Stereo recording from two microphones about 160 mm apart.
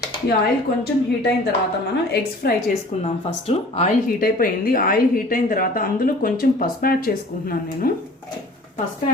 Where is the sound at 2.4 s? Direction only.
80° left.